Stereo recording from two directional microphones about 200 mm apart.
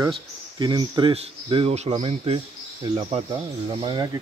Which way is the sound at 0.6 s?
25° right (ahead or behind).